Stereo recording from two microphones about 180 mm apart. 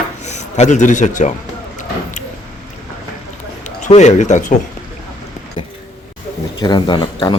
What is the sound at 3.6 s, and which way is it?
Speech, 40° left (ahead or behind).